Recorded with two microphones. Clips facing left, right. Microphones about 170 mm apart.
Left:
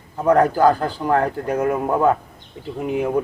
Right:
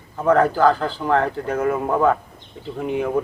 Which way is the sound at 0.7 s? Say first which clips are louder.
Left 1 dB; 45° left (ahead or behind).